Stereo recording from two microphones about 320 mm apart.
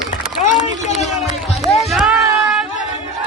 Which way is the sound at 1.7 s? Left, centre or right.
Centre.